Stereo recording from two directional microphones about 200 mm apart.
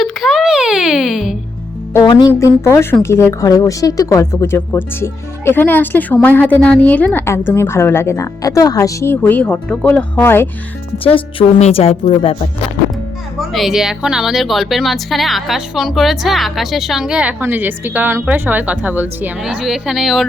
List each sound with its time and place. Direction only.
0.0 s a sound: centre (ahead or behind)
2.0 s a woman's voice: 20° left (ahead or behind)
10.9 s speech: 25° left (ahead or behind)
13.5 s a woman's voice: centre (ahead or behind)